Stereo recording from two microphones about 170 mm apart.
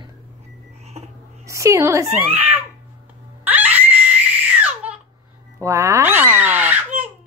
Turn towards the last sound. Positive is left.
turn(degrees=-10)  # may be behind; listen again after turning